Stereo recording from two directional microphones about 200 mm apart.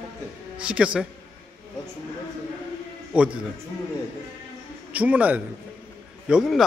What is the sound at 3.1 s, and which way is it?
Speech, 5° right (ahead or behind).